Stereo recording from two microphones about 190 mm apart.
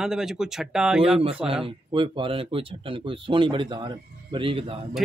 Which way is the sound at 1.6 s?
25° right (ahead or behind).